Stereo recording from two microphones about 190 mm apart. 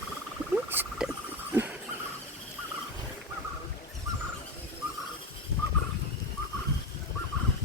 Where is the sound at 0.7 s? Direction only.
10° right (ahead or behind).